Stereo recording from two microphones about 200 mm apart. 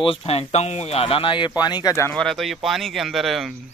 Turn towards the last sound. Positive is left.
turn(degrees=0)  # may be behind; listen again after turning